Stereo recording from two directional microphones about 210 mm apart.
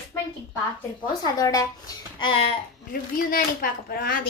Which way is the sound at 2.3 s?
25° left (ahead or behind).